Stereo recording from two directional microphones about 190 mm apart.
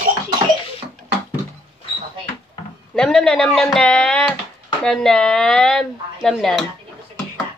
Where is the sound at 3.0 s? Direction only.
5° left (ahead or behind).